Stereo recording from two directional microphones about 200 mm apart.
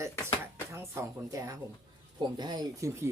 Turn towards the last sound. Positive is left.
turn(degrees=-15)  # may be behind; listen again after turning